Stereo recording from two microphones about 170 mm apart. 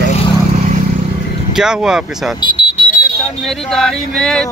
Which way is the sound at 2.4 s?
25° left (ahead or behind).